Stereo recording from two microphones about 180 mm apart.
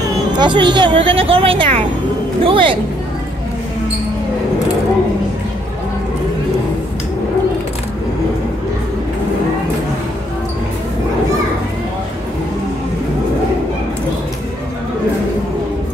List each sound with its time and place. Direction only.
0.4 s a woman's voice: 25° right (ahead or behind)